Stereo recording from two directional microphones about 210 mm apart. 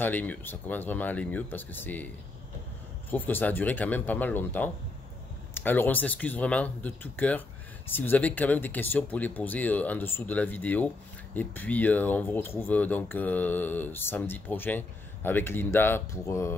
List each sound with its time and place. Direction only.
0.0 s speech: 10° left (ahead or behind)
3.1 s speech: 10° left (ahead or behind)